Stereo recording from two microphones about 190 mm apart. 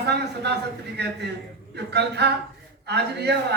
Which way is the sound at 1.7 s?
60° right (ahead or behind).